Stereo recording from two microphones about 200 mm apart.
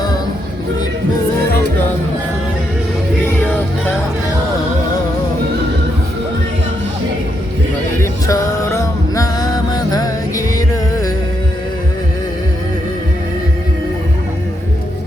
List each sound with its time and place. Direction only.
8.0 s music: 15° left (ahead or behind)